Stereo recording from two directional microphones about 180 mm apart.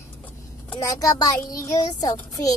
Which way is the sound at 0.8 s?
20° left (ahead or behind).